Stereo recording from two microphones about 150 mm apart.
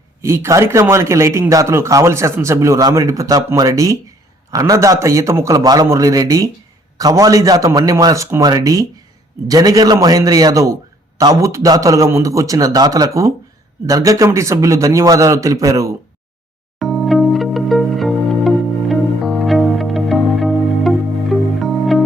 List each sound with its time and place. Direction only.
0.2 s speech: 20° right (ahead or behind)
16.8 s music: centre (ahead or behind)